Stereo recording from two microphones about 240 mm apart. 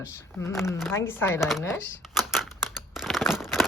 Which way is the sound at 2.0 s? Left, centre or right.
Centre.